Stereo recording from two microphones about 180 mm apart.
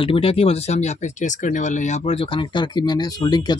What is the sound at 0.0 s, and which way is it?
Speech, 30° left (ahead or behind).